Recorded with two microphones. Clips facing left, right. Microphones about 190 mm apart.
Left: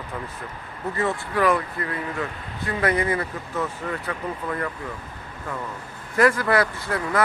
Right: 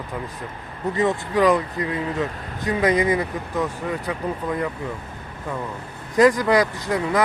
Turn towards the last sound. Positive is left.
turn(degrees=-15)  # may be behind; listen again after turning